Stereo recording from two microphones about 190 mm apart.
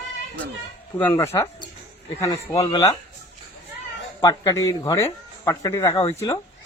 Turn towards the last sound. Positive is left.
turn(degrees=20)  # may be behind; listen again after turning